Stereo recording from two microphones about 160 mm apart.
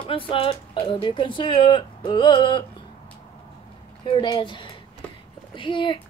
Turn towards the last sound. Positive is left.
turn(degrees=30)  # may be behind; listen again after turning